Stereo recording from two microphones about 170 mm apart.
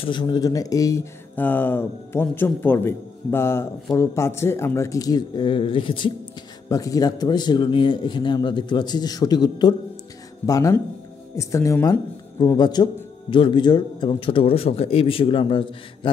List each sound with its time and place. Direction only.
0.0 s speech: 30° left (ahead or behind)